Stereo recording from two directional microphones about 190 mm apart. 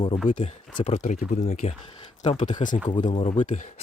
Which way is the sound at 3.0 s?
30° left (ahead or behind).